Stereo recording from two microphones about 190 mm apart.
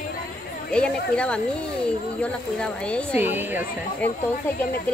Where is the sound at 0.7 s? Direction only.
5° left (ahead or behind).